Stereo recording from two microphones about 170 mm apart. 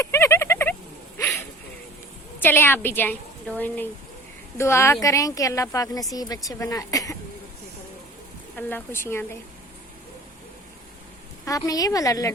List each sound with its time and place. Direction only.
0.0 s a sound: 15° left (ahead or behind)
2.4 s a woman's voice: 15° left (ahead or behind)
8.5 s a woman's voice: 10° left (ahead or behind)
11.4 s a woman's voice: 20° left (ahead or behind)